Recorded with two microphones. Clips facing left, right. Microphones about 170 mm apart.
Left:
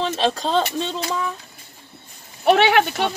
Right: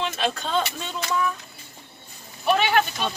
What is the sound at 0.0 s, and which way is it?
Speech, 30° left (ahead or behind).